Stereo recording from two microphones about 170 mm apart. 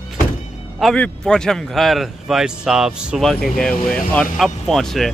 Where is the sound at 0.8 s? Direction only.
5° left (ahead or behind).